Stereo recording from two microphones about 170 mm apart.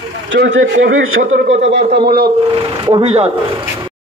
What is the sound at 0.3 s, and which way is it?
Speech, 90° right.